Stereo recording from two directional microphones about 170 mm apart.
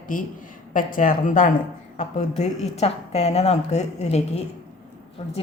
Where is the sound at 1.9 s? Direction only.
40° left (ahead or behind).